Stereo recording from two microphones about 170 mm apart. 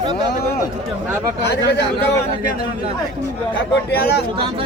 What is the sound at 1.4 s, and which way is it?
Speech, 75° left (ahead or behind).